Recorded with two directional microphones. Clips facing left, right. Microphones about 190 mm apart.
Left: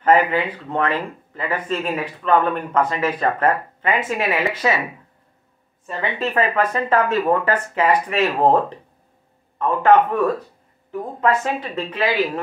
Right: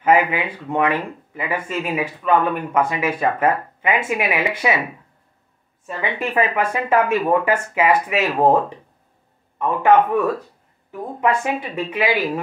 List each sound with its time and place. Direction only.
0.0 s speech: 10° right (ahead or behind)
5.9 s speech: 10° right (ahead or behind)